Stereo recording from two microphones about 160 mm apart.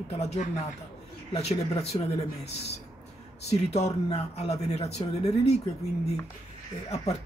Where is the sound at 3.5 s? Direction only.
40° left (ahead or behind).